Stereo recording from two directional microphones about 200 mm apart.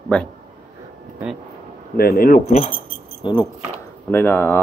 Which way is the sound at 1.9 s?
50° left (ahead or behind).